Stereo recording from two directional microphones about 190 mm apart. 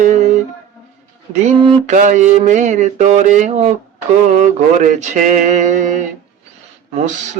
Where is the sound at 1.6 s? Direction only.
35° right (ahead or behind).